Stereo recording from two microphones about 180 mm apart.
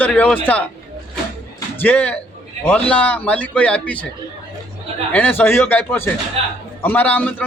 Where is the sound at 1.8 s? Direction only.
10° left (ahead or behind).